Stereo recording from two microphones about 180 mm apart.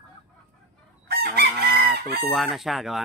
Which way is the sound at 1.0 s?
60° right (ahead or behind).